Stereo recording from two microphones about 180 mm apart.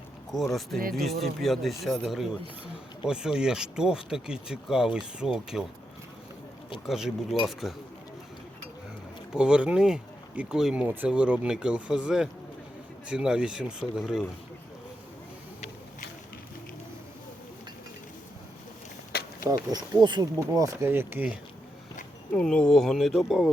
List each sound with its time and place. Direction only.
0.3 s speech: centre (ahead or behind)
6.8 s speech: centre (ahead or behind)
9.3 s speech: 5° right (ahead or behind)
19.1 s a sound: 60° left (ahead or behind)
19.7 s speech: 25° right (ahead or behind)
20.6 s speech: 15° right (ahead or behind)
22.4 s speech: 5° left (ahead or behind)